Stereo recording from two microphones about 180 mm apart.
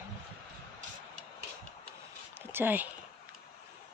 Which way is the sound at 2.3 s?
10° right (ahead or behind).